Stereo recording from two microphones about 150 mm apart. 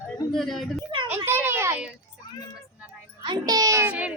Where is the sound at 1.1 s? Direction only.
15° right (ahead or behind).